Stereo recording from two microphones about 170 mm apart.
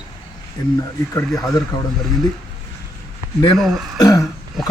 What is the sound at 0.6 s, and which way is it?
A man's voice, 25° left (ahead or behind).